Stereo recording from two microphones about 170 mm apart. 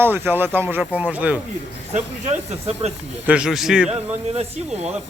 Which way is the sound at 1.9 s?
40° right (ahead or behind).